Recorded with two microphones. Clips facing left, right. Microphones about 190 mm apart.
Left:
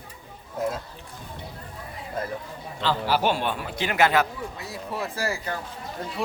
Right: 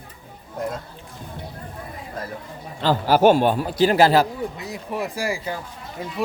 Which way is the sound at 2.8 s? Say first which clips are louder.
Right 7 dB; 45° right (ahead or behind).